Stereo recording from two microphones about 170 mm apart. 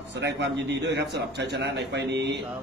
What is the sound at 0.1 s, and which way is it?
Speech, 90° right.